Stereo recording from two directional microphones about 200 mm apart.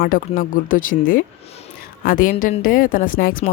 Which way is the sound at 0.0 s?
45° left (ahead or behind).